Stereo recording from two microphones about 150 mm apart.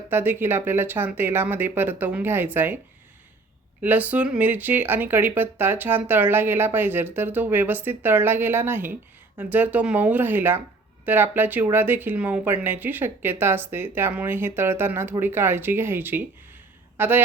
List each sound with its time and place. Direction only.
0.1 s speech: 15° right (ahead or behind)
3.8 s speech: 10° right (ahead or behind)